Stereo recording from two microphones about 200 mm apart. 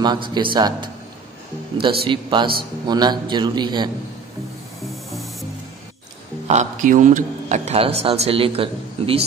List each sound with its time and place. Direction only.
0.0 s a man's voice: 20° right (ahead or behind)
6.4 s a man's voice: 35° right (ahead or behind)